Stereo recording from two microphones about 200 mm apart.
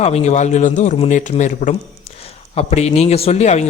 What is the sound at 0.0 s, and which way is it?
Speech, 35° left (ahead or behind).